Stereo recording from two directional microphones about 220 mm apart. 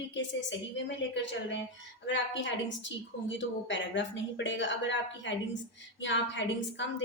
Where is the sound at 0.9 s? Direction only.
55° left (ahead or behind).